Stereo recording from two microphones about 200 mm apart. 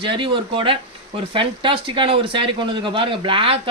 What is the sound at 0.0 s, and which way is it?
Speech, 25° right (ahead or behind).